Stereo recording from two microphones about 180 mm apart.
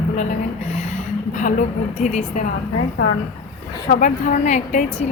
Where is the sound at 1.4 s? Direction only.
45° left (ahead or behind).